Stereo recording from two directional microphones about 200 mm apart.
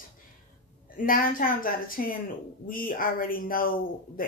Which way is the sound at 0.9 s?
45° left (ahead or behind).